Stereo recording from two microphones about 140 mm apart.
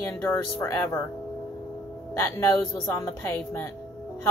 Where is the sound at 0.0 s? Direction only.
15° left (ahead or behind).